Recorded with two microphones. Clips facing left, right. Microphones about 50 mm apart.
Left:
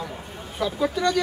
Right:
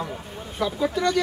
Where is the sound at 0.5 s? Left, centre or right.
Centre.